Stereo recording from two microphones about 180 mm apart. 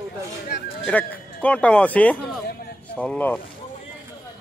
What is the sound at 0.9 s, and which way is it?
A man's voice, 10° left (ahead or behind).